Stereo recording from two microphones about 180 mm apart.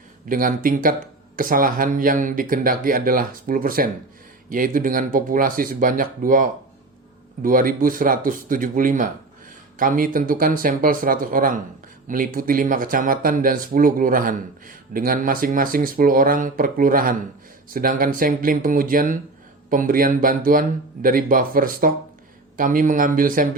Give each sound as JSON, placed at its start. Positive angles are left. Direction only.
{"t": 0.3, "sound": "speech", "side_deg": -50}